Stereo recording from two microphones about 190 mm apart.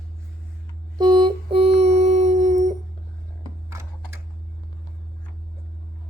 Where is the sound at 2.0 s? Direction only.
40° right (ahead or behind).